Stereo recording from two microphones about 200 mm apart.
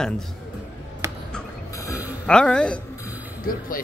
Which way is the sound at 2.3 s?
5° left (ahead or behind).